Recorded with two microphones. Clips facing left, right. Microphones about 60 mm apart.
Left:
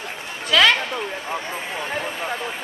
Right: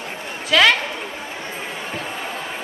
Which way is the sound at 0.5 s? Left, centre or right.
Centre.